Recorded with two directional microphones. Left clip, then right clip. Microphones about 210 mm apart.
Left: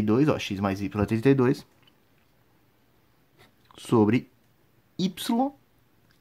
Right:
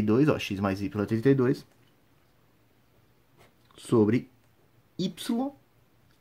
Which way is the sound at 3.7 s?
15° left (ahead or behind).